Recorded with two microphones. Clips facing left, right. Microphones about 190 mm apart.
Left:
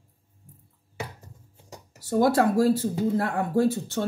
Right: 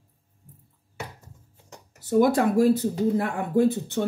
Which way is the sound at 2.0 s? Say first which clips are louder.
Right 1 dB; 20° right (ahead or behind).